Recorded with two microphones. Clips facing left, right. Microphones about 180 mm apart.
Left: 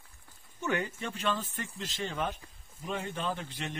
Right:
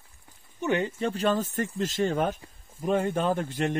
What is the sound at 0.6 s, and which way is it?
Speech, 20° right (ahead or behind).